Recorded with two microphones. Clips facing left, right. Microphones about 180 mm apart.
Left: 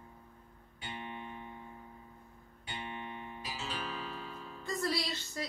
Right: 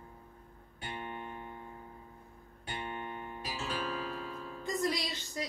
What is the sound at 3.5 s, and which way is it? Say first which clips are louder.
Music: right 4 dB; 55° right (ahead or behind).